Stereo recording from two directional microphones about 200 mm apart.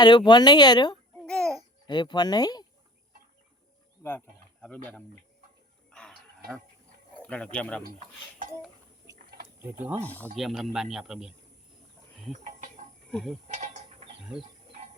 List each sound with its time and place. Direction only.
0.0 s speech: 20° left (ahead or behind)
1.2 s a sound: 5° left (ahead or behind)
1.9 s speech: 20° left (ahead or behind)
4.6 s speech: 5° left (ahead or behind)
5.9 s livestock: 5° left (ahead or behind)
7.2 s speech: 5° left (ahead or behind)
10.0 s speech: 10° left (ahead or behind)
12.3 s a sound: 40° right (ahead or behind)
13.1 s speech: centre (ahead or behind)
13.5 s bird: 35° right (ahead or behind)